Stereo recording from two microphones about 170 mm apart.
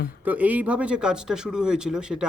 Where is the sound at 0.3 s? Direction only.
10° right (ahead or behind).